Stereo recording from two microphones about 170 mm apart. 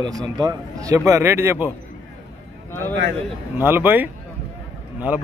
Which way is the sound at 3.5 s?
10° right (ahead or behind).